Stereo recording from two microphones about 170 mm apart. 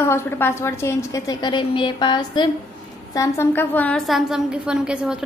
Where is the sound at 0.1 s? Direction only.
15° left (ahead or behind).